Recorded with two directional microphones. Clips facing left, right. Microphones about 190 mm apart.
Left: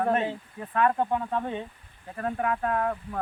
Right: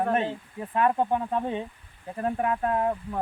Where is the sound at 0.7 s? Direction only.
20° right (ahead or behind).